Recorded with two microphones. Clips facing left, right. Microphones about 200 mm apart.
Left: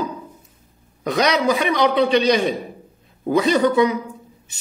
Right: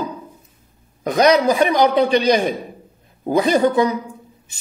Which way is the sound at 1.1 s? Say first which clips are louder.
Right 4 dB; 45° right (ahead or behind).